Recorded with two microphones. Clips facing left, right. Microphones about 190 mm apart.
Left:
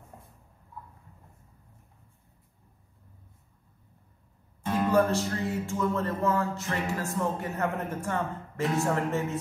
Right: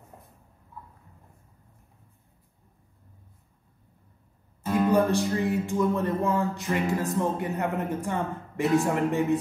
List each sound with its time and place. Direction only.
4.7 s music: 15° right (ahead or behind)